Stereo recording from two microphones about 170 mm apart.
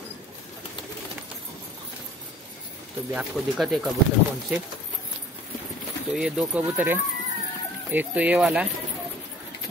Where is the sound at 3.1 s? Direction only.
5° right (ahead or behind).